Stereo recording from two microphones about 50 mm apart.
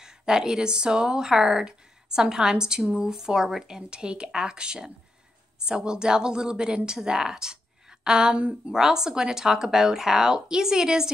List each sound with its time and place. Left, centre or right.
0.0 s speech: centre
8.4 s speech: right
8.7 s speech: centre